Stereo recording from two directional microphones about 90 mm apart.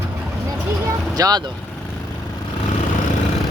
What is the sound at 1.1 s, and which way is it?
Speech, 45° right (ahead or behind).